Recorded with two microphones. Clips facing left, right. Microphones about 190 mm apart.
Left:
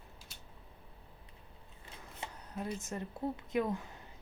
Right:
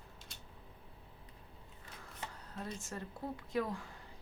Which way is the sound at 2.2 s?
20° left (ahead or behind).